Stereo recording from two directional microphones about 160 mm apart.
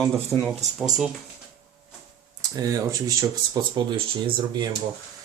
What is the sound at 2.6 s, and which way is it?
Speech, 20° right (ahead or behind).